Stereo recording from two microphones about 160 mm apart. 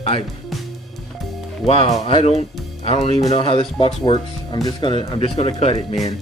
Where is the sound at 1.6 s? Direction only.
35° left (ahead or behind).